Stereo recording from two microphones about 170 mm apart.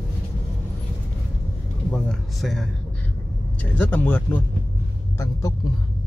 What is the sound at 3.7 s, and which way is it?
Speech, 10° left (ahead or behind).